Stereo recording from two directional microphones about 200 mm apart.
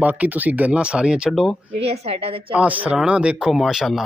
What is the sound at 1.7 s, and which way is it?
Speech, 30° right (ahead or behind).